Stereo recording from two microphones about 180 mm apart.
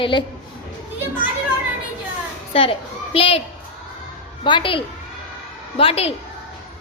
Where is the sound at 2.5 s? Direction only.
30° left (ahead or behind).